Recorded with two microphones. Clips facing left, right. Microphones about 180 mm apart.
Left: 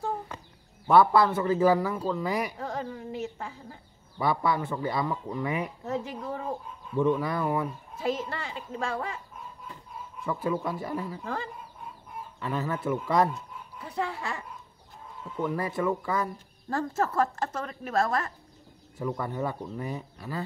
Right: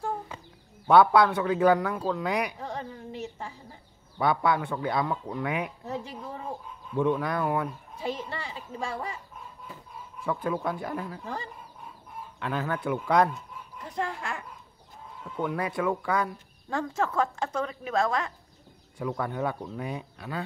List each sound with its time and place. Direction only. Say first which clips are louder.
0.8 s speech: right 1 dB; centre (ahead or behind)
10.2 s speech: even; centre (ahead or behind)
15.4 s speech: even; centre (ahead or behind)